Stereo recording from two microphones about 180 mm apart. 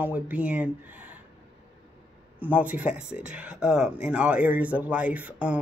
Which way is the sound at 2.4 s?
10° right (ahead or behind).